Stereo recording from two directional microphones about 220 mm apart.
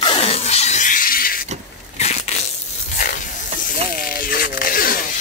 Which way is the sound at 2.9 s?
40° left (ahead or behind).